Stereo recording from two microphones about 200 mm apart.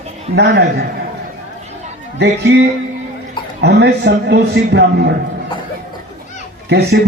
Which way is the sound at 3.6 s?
55° right (ahead or behind).